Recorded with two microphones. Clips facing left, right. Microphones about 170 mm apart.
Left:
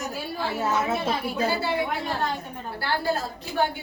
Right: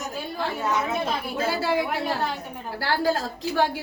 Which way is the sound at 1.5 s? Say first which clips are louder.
Right 1 dB; 90° right.